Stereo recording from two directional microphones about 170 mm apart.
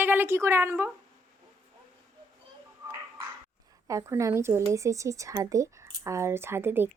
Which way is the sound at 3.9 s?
15° right (ahead or behind).